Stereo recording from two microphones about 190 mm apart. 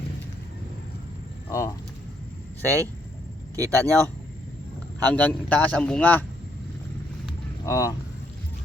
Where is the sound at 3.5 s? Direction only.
15° right (ahead or behind).